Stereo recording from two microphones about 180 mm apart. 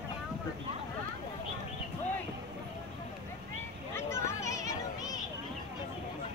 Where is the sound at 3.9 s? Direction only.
15° left (ahead or behind).